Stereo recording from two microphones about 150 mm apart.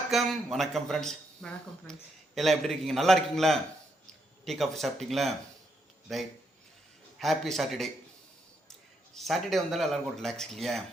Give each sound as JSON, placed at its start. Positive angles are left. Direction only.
{"t": 0.1, "sound": "speech", "side_deg": 0}
{"t": 9.1, "sound": "speech", "side_deg": 0}